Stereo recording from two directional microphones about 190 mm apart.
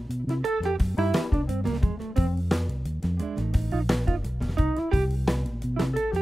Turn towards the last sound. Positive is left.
turn(degrees=0)  # may be behind; listen again after turning